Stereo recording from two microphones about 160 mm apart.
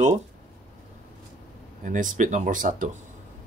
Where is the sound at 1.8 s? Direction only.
55° right (ahead or behind).